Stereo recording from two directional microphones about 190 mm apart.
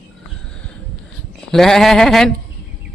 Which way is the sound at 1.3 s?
Centre (ahead or behind).